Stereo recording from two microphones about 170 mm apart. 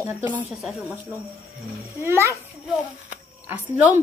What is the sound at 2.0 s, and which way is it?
Speech, 15° right (ahead or behind).